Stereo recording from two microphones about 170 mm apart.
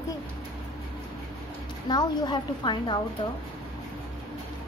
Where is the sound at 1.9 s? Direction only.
25° left (ahead or behind).